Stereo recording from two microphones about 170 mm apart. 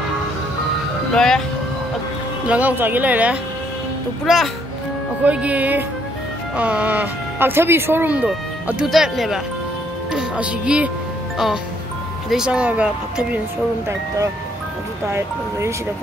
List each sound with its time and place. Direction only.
1.1 s speech: 5° left (ahead or behind)
2.4 s speech: 10° right (ahead or behind)
5.2 s speech: 10° right (ahead or behind)
12.3 s speech: 5° right (ahead or behind)
13.8 s speech: 20° right (ahead or behind)